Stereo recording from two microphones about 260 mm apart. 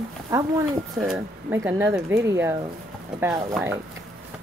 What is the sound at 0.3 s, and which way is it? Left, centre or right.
A woman's voice, centre.